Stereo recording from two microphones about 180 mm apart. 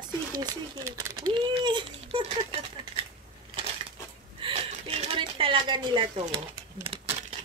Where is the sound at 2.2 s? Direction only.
35° right (ahead or behind).